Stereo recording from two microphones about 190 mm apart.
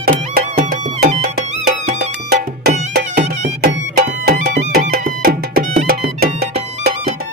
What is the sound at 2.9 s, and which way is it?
Music, 55° right (ahead or behind).